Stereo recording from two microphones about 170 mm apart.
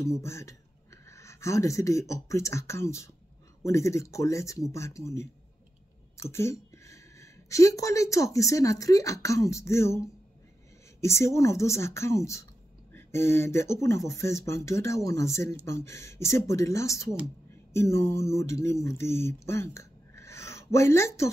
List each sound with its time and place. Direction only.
0.0 s a woman's voice: 15° left (ahead or behind)